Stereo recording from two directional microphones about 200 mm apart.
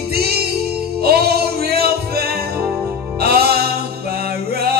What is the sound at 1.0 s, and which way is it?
Music, 50° right (ahead or behind).